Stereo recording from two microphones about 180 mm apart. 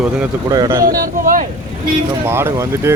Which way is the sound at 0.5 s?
20° right (ahead or behind).